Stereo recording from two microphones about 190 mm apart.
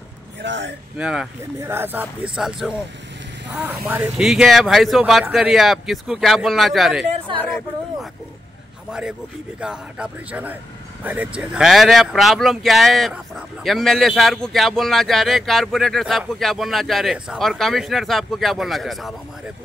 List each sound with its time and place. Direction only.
0.4 s a man's voice: 75° right (ahead or behind)
0.9 s speech: 5° right (ahead or behind)
9.6 s speech: 5° right (ahead or behind)